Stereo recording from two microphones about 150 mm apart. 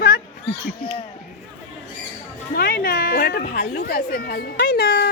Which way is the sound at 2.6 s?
90° left.